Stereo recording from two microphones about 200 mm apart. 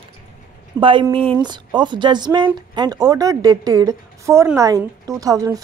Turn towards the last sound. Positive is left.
turn(degrees=-15)  # may be behind; listen again after turning